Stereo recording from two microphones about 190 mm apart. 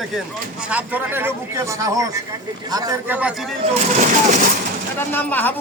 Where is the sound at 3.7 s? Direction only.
35° right (ahead or behind).